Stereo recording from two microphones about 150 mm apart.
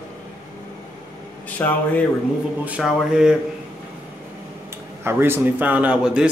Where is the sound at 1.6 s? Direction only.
15° left (ahead or behind).